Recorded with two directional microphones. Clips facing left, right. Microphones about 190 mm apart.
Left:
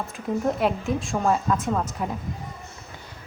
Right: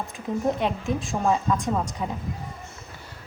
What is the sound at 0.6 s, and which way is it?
A woman's voice, centre (ahead or behind).